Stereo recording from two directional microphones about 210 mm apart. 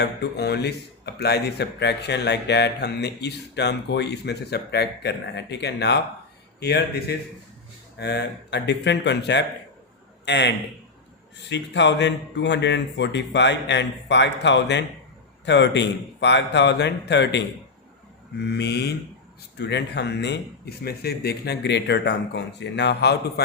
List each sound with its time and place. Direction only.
0.0 s speech: 50° left (ahead or behind)